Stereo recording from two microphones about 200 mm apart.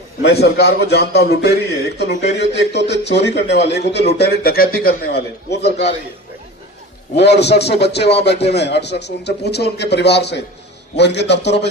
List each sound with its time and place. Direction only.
0.2 s a man's voice: 55° left (ahead or behind)
7.2 s a man's voice: 55° left (ahead or behind)